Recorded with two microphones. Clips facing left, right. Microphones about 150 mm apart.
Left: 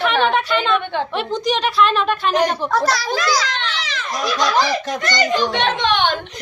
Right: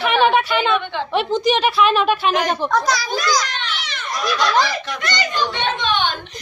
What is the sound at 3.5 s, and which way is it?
Children playing, 90° left.